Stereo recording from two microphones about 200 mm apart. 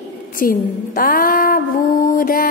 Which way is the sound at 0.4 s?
45° left (ahead or behind).